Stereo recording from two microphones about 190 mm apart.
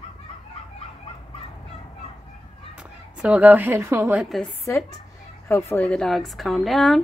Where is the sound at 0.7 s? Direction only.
30° left (ahead or behind).